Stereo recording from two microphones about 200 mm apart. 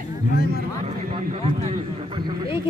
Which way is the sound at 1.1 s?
30° right (ahead or behind).